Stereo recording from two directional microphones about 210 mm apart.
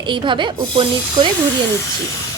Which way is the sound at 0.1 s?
20° right (ahead or behind).